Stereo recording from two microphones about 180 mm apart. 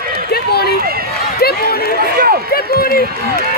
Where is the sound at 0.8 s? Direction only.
55° right (ahead or behind).